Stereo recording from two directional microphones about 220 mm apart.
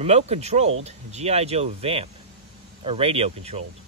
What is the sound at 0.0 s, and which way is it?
Speech, 30° right (ahead or behind).